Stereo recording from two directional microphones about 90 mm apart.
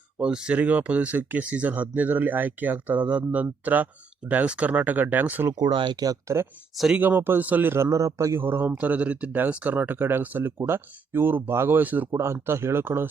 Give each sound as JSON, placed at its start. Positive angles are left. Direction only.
{"t": 0.2, "sound": "speech", "side_deg": -10}
{"t": 5.7, "sound": "speech", "side_deg": -60}
{"t": 6.1, "sound": "speech", "side_deg": -30}
{"t": 6.9, "sound": "speech", "side_deg": -20}
{"t": 7.9, "sound": "speech", "side_deg": -35}